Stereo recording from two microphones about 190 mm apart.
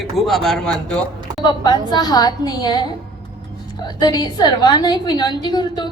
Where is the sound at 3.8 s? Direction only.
20° left (ahead or behind).